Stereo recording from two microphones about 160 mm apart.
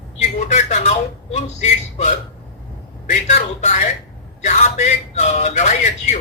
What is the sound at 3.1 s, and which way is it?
A man's voice, 45° left (ahead or behind).